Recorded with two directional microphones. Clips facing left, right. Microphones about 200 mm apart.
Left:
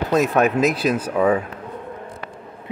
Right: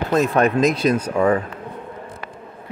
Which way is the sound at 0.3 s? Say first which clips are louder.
Right 1 dB; 5° left (ahead or behind).